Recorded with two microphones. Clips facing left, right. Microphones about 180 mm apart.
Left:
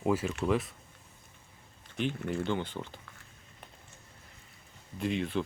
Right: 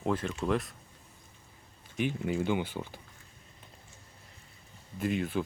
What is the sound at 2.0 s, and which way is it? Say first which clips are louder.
Speech: right 2 dB; 10° right (ahead or behind).